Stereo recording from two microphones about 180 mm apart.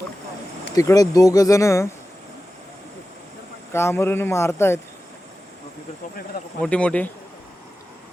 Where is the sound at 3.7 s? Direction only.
15° left (ahead or behind).